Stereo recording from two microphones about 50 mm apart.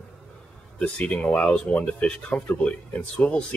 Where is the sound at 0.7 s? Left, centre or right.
Left.